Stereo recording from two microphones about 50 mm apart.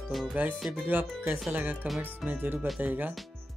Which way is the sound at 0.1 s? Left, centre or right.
Centre.